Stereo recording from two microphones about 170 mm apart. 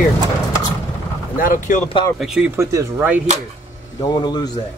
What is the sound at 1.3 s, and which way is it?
Speech, 50° left (ahead or behind).